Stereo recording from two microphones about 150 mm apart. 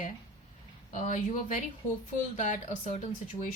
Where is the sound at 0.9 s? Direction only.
55° left (ahead or behind).